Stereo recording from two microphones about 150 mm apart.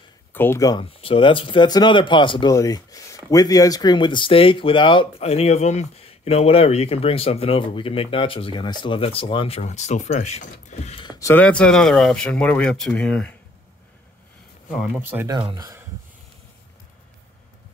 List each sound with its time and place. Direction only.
0.3 s speech: 15° left (ahead or behind)
1.0 s speech: 35° left (ahead or behind)
11.0 s a sound: 25° left (ahead or behind)
11.3 s speech: 10° left (ahead or behind)
14.8 s speech: 10° right (ahead or behind)
15.2 s speech: 30° right (ahead or behind)